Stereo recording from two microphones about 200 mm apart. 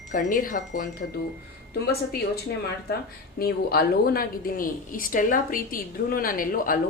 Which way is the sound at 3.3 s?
50° left (ahead or behind).